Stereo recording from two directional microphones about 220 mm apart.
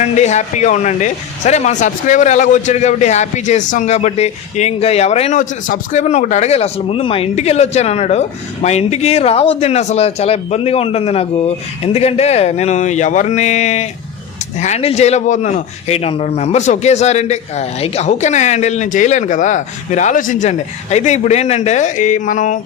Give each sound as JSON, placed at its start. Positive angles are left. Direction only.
{"t": 0.0, "sound": "speech", "side_deg": 30}